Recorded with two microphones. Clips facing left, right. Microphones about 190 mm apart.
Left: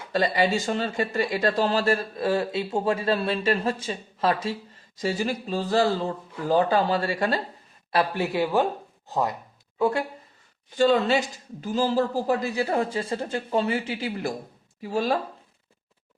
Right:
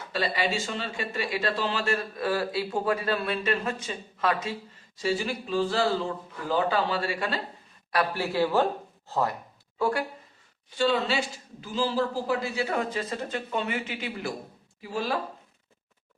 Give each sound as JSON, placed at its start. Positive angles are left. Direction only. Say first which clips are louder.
{"t": 0.1, "sound": "speech", "louder": "left 5 dB", "side_deg": 40}
{"t": 7.9, "sound": "a man's voice", "louder": "left 2 dB", "side_deg": 20}
{"t": 10.8, "sound": "speech", "louder": "left 5 dB", "side_deg": 50}